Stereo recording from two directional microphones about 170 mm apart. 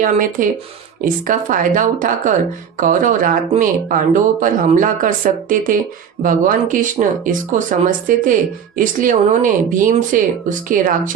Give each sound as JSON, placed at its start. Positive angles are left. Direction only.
{"t": 0.0, "sound": "speech", "side_deg": -55}